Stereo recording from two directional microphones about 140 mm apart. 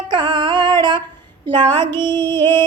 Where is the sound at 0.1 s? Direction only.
35° right (ahead or behind).